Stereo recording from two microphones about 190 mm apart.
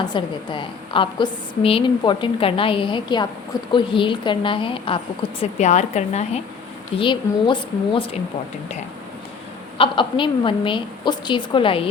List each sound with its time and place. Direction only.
0.0 s a woman's voice: 25° left (ahead or behind)
7.0 s a woman's voice: 25° left (ahead or behind)
9.7 s a woman's voice: 25° left (ahead or behind)